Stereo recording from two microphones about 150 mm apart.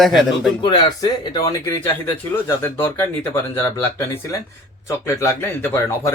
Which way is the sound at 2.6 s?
15° left (ahead or behind).